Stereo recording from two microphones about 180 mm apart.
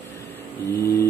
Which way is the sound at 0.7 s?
55° left (ahead or behind).